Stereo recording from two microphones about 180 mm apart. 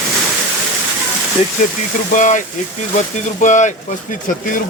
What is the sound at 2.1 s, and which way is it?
Speech, 45° left (ahead or behind).